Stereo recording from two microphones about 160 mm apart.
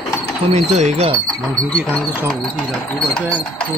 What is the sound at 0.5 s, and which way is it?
Speech, 45° right (ahead or behind).